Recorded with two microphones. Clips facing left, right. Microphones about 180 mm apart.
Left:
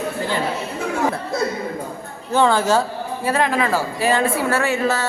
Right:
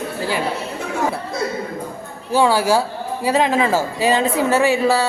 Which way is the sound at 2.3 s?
10° right (ahead or behind).